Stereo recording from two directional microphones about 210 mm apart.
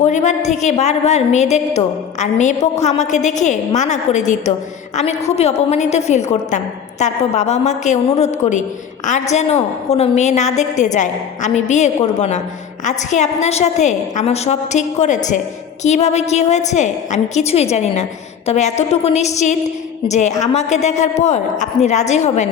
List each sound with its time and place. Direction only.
0.0 s a woman's voice: 35° left (ahead or behind)